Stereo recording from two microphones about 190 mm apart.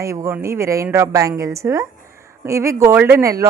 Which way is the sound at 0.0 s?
15° right (ahead or behind).